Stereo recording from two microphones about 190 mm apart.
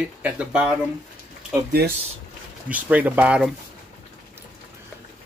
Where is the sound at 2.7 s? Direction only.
10° right (ahead or behind).